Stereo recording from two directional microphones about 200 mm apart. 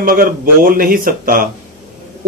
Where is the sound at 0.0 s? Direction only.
45° right (ahead or behind).